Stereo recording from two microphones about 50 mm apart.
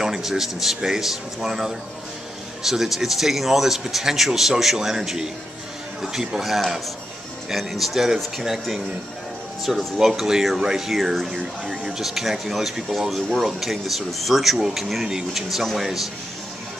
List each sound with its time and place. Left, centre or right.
0.0 s speech: centre